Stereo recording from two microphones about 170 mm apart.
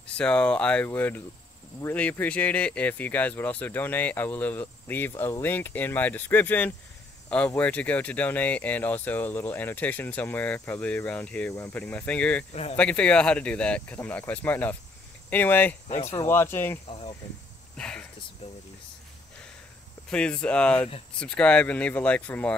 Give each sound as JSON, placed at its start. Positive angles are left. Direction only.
{"t": 0.0, "sound": "speech", "side_deg": 5}
{"t": 16.8, "sound": "insect", "side_deg": 35}
{"t": 17.7, "sound": "speech", "side_deg": 5}
{"t": 18.4, "sound": "insect", "side_deg": 35}
{"t": 20.1, "sound": "speech", "side_deg": 5}